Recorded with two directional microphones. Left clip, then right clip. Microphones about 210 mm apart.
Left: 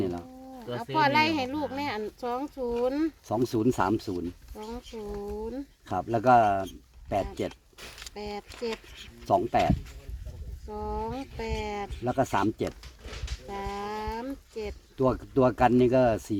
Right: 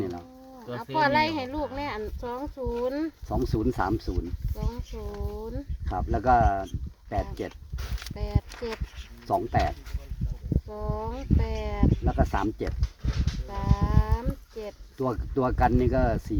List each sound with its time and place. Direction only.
0.0 s livestock: 40° left (ahead or behind)
3.2 s speech: 35° left (ahead or behind)
5.5 s livestock: 45° left (ahead or behind)
6.0 s speech: 30° left (ahead or behind)
8.1 s livestock: 45° left (ahead or behind)
9.0 s a sound: 35° left (ahead or behind)
10.7 s livestock: 45° left (ahead or behind)
13.8 s a sound: 50° left (ahead or behind)
14.9 s speech: 30° left (ahead or behind)